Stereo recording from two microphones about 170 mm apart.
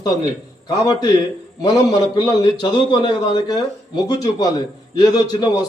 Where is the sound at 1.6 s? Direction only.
20° left (ahead or behind).